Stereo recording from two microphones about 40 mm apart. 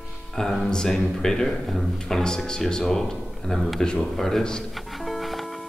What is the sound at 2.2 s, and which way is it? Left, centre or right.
A man's voice, centre.